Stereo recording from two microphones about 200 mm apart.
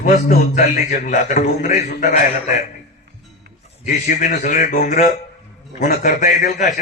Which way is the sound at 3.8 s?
40° left (ahead or behind).